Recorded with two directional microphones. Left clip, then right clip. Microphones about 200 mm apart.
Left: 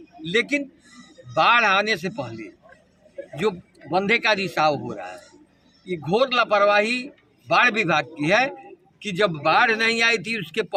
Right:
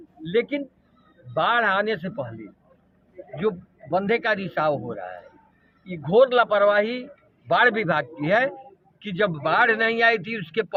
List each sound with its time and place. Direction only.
0.2 s a man's voice: 5° left (ahead or behind)
3.4 s a man's voice: centre (ahead or behind)